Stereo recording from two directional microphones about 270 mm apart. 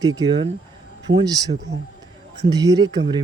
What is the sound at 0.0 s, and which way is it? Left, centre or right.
Speech, centre.